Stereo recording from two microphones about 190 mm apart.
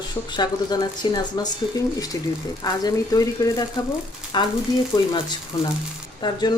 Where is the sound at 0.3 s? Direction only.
20° left (ahead or behind).